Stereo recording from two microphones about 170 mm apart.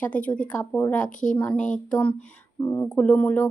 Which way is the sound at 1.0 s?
50° left (ahead or behind).